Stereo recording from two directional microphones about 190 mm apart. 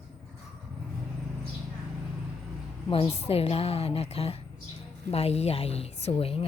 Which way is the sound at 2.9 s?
30° left (ahead or behind).